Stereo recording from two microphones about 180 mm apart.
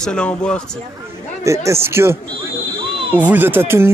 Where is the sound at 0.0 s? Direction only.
5° left (ahead or behind).